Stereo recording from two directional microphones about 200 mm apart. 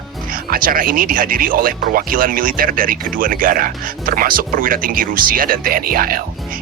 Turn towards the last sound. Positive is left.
turn(degrees=-45)  # may be behind; listen again after turning